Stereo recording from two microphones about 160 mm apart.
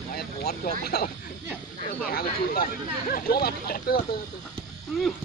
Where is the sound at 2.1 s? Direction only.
70° left (ahead or behind).